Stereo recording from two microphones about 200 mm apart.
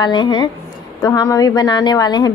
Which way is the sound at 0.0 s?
20° left (ahead or behind).